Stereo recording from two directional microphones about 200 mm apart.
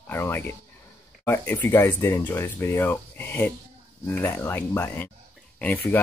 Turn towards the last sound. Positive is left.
turn(degrees=10)  # may be behind; listen again after turning